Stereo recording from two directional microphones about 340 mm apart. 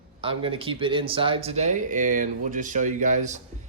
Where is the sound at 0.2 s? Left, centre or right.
Centre.